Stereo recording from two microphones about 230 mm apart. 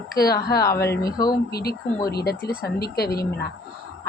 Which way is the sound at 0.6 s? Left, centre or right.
Centre.